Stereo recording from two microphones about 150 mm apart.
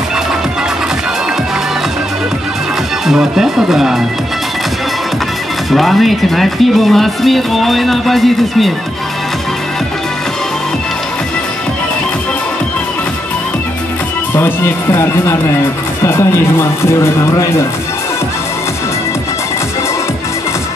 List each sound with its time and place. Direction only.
3.1 s speech: centre (ahead or behind)
5.7 s speech: centre (ahead or behind)
14.3 s speech: 15° left (ahead or behind)